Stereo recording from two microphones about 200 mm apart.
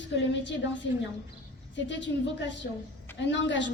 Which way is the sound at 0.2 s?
65° left (ahead or behind).